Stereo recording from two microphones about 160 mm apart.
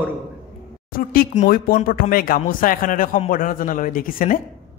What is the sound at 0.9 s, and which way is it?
A man's voice, 65° left (ahead or behind).